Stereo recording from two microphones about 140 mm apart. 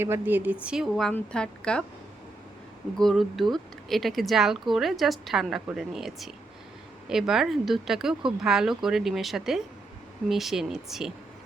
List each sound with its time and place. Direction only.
0.0 s speech: 15° right (ahead or behind); by 1.8 s 5° left (ahead or behind)
3.0 s speech: centre (ahead or behind)